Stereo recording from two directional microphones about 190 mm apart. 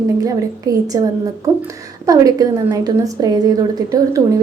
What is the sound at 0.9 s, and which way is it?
A woman's voice, 15° right (ahead or behind).